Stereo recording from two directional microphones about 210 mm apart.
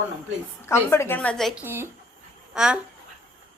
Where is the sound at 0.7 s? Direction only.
10° left (ahead or behind).